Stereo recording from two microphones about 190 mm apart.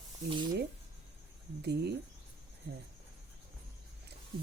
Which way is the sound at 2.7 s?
60° right (ahead or behind).